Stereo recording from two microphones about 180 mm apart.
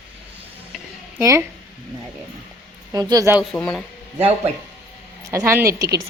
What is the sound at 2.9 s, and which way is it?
Speech, 20° right (ahead or behind).